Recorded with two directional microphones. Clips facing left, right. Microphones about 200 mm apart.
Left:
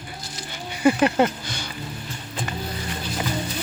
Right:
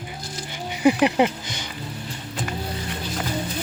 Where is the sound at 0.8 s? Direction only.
15° right (ahead or behind).